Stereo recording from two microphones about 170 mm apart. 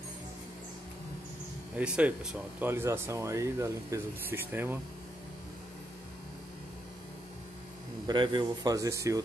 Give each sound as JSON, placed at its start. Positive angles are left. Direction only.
{"t": 1.8, "sound": "speech", "side_deg": -10}
{"t": 8.1, "sound": "speech", "side_deg": -30}